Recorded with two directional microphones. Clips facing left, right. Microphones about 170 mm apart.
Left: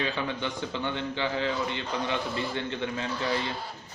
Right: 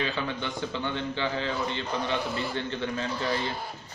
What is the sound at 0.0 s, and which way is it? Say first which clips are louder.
A man's voice: even; 15° left (ahead or behind).